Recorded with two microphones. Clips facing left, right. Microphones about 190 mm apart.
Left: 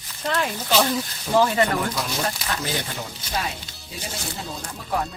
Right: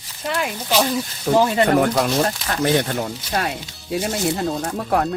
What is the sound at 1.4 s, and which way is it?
Speech, 20° right (ahead or behind).